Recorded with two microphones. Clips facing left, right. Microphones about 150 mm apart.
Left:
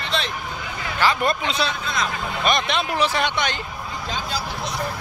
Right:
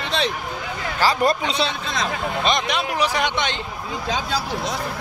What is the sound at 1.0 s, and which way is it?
Speech, 35° right (ahead or behind).